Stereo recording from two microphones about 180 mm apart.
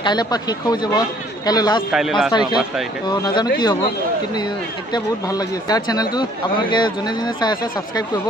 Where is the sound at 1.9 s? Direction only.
Centre (ahead or behind).